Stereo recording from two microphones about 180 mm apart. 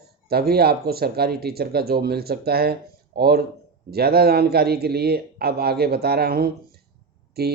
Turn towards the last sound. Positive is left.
turn(degrees=-60)  # may be behind; listen again after turning